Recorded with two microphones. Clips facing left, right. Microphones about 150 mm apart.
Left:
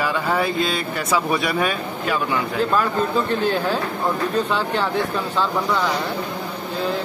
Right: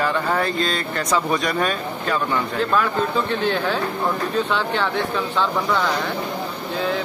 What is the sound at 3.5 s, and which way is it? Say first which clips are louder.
A man's voice: even; 10° left (ahead or behind).